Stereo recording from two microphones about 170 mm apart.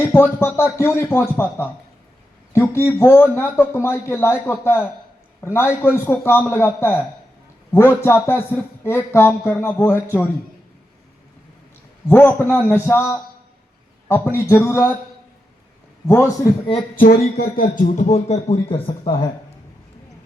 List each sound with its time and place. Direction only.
0.0 s speech: 15° left (ahead or behind)
12.0 s speech: 10° left (ahead or behind)
16.0 s speech: 15° left (ahead or behind)
16.9 s speech: 55° left (ahead or behind); by 19.3 s 30° left (ahead or behind)